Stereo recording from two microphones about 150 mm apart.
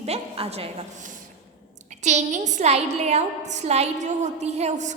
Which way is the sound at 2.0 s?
50° right (ahead or behind).